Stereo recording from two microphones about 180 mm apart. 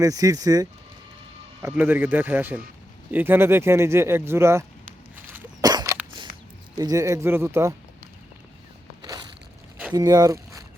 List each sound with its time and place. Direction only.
0.0 s speech: 20° right (ahead or behind)
1.6 s speech: 10° right (ahead or behind)
5.6 s a sound: 20° right (ahead or behind)
6.7 s speech: 20° right (ahead or behind)
9.0 s a sound: 25° right (ahead or behind)
9.9 s speech: 20° right (ahead or behind)